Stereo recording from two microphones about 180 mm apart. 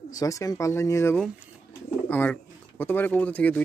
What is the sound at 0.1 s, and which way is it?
Speech, 20° left (ahead or behind).